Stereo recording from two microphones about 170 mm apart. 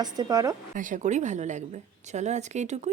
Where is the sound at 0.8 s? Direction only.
45° right (ahead or behind).